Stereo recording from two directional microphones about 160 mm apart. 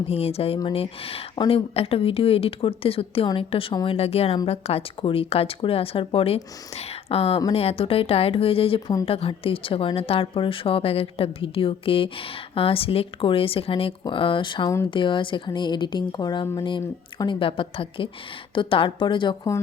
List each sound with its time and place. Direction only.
0.1 s a woman's voice: 40° left (ahead or behind)